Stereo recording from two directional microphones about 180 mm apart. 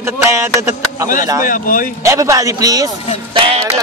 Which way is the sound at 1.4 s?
50° left (ahead or behind).